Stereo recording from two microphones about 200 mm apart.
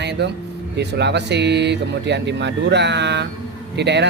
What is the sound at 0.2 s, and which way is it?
Speech, 60° right (ahead or behind).